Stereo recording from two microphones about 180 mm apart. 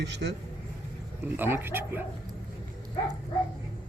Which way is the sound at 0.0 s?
70° right (ahead or behind).